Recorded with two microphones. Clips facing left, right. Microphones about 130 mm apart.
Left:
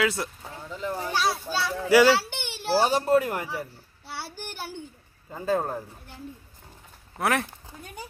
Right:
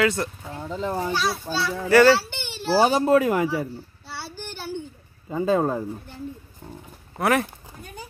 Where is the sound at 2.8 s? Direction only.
90° right.